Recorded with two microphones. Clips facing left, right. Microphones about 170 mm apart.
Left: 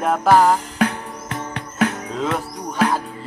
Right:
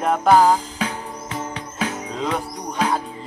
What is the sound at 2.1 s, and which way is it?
Music, centre (ahead or behind).